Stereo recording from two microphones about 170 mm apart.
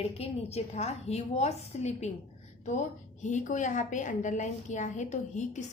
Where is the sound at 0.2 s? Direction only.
35° left (ahead or behind).